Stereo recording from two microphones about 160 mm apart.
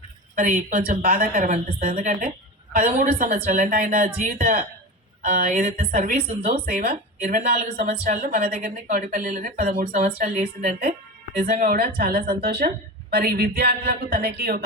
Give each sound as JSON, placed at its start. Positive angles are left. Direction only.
{"t": 0.3, "sound": "a woman's voice", "side_deg": -50}
{"t": 1.4, "sound": "a woman's voice", "side_deg": -50}
{"t": 11.4, "sound": "a woman's voice", "side_deg": -65}